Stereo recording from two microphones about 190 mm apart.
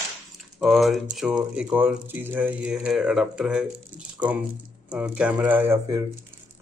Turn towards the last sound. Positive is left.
turn(degrees=-15)  # may be behind; listen again after turning